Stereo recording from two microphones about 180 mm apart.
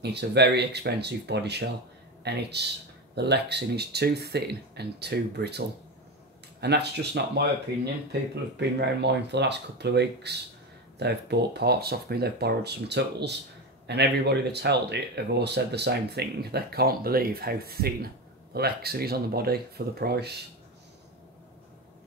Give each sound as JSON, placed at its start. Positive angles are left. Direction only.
{"t": 0.0, "sound": "speech", "side_deg": -65}
{"t": 6.6, "sound": "speech", "side_deg": -65}